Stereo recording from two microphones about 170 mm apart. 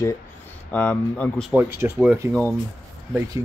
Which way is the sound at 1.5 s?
10° right (ahead or behind).